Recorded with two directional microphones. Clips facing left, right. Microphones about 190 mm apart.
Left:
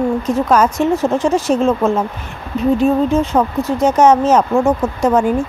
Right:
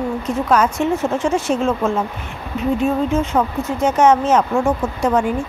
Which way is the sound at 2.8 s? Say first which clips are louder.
Left 3 dB; 35° left (ahead or behind).